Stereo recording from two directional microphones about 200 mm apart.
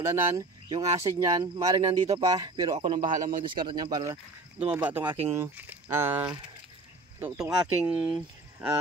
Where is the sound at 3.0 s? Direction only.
40° right (ahead or behind).